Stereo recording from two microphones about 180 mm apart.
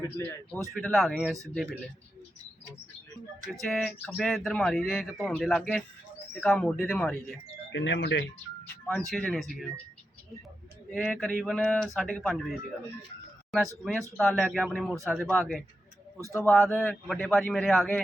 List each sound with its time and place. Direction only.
0.0 s a man's voice: 15° left (ahead or behind)
0.7 s speech: centre (ahead or behind)
3.5 s speech: centre (ahead or behind)
7.7 s speech: 80° left
8.9 s speech: centre (ahead or behind)
10.9 s speech: 5° left (ahead or behind)
16.3 s a man's voice: 15° left (ahead or behind)